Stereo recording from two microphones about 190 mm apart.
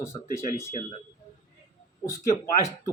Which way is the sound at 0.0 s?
15° left (ahead or behind).